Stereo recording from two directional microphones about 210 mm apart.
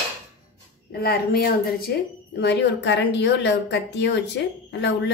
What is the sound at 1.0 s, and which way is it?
Speech, 45° left (ahead or behind).